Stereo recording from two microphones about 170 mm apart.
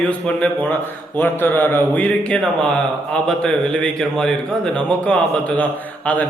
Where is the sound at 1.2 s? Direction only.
10° left (ahead or behind).